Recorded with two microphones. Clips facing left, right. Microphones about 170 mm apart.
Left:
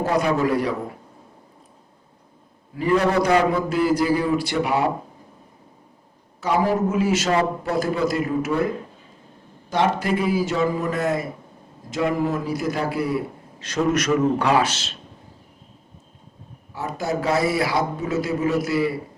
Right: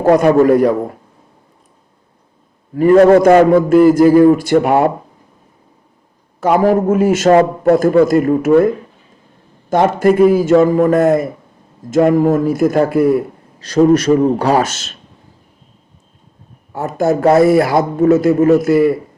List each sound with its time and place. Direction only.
0.0 s a man's voice: 50° right (ahead or behind)
2.7 s a man's voice: 50° right (ahead or behind)
6.4 s a man's voice: 50° right (ahead or behind)
16.7 s a man's voice: 50° right (ahead or behind)